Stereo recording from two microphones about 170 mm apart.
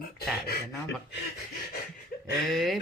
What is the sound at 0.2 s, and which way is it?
Speech, 65° left (ahead or behind).